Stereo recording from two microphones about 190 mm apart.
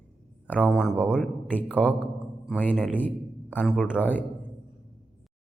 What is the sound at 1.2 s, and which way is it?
Speech, 10° left (ahead or behind).